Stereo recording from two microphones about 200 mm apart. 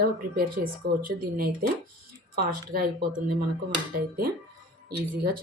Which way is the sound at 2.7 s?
45° right (ahead or behind).